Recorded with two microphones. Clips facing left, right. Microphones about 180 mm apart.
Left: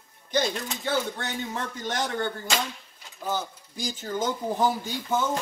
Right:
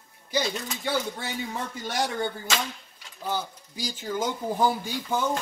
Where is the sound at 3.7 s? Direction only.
50° left (ahead or behind).